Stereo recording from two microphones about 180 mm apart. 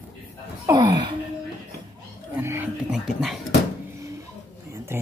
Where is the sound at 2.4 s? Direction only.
10° right (ahead or behind).